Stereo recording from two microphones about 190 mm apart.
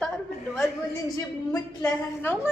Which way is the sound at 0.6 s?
20° left (ahead or behind).